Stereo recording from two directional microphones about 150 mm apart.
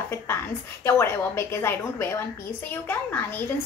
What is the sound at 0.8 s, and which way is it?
A woman's voice, 15° left (ahead or behind).